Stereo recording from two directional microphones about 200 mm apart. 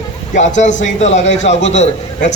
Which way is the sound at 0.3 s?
35° left (ahead or behind).